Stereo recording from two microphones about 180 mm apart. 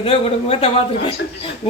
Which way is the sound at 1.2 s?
65° left (ahead or behind).